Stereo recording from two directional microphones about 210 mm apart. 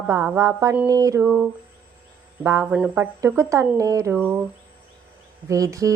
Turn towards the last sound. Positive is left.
turn(degrees=-15)  # may be behind; listen again after turning